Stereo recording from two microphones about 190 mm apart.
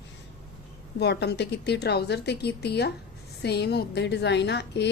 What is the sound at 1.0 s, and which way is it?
A woman's voice, 60° left (ahead or behind).